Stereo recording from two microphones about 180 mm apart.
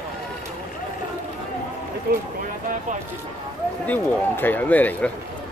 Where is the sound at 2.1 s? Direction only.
65° right (ahead or behind).